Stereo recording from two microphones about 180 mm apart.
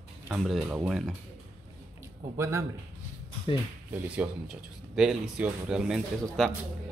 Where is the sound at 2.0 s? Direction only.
15° right (ahead or behind).